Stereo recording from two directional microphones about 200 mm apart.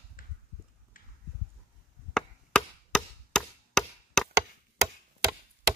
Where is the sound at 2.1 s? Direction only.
5° left (ahead or behind).